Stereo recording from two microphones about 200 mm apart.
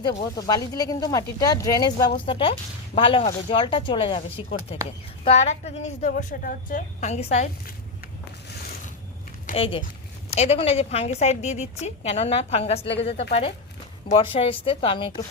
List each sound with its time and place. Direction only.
0.0 s a woman's voice: 20° left (ahead or behind)
9.6 s a woman's voice: 25° left (ahead or behind)